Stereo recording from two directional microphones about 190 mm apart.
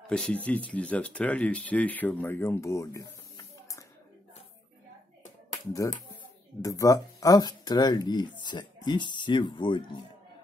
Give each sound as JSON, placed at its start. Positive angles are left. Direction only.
{"t": 0.0, "sound": "speech", "side_deg": 5}
{"t": 5.5, "sound": "music", "side_deg": 15}
{"t": 6.6, "sound": "speech", "side_deg": 20}